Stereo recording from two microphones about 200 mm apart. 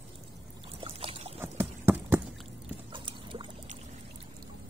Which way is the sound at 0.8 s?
30° right (ahead or behind).